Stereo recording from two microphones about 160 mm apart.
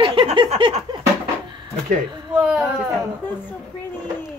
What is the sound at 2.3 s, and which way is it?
Speech, 5° right (ahead or behind).